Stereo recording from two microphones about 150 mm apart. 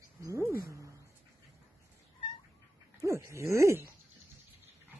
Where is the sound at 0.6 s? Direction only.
20° right (ahead or behind).